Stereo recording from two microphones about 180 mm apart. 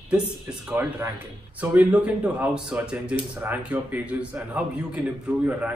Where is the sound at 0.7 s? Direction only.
10° right (ahead or behind).